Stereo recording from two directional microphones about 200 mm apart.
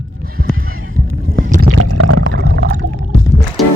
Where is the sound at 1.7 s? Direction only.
80° right; by 2.8 s 55° right (ahead or behind).